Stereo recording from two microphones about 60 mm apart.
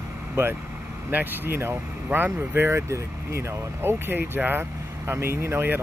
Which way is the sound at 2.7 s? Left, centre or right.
Right.